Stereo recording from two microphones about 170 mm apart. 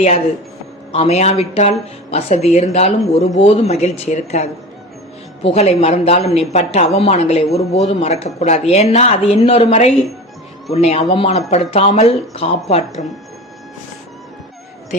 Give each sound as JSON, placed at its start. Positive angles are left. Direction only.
{"t": 0.9, "sound": "speech", "side_deg": 40}